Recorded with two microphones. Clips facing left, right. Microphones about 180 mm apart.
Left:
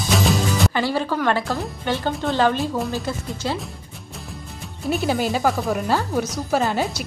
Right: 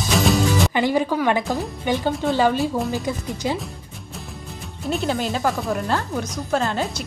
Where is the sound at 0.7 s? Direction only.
15° right (ahead or behind).